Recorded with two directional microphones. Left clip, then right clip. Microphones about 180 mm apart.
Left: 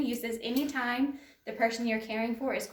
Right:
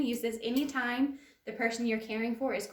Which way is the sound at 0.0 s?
25° right (ahead or behind).